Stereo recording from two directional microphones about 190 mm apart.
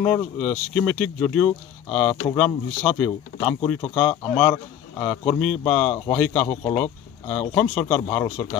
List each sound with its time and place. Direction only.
0.0 s speech: 10° left (ahead or behind)
6.5 s speech: 20° left (ahead or behind)
7.2 s speech: 10° left (ahead or behind)